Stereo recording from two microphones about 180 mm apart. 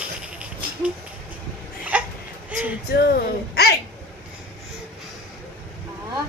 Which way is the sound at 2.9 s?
60° left (ahead or behind).